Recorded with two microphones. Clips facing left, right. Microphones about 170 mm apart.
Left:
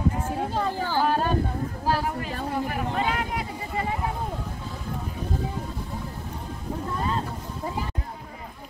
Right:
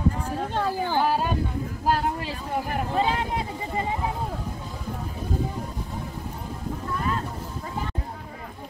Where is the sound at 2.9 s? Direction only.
30° right (ahead or behind).